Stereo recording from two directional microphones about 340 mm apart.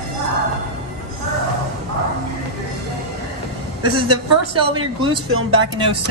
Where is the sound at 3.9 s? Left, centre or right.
Centre.